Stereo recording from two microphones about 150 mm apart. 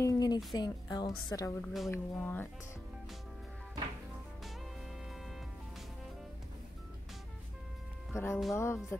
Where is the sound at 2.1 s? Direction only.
10° left (ahead or behind).